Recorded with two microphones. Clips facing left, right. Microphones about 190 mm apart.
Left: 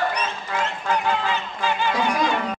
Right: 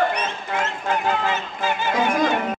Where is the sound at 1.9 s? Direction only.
50° right (ahead or behind).